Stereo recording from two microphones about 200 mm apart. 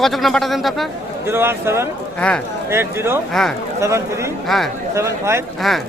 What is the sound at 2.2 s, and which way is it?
Speech, 5° left (ahead or behind).